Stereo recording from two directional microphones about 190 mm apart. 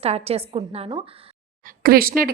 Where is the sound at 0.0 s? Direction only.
30° right (ahead or behind).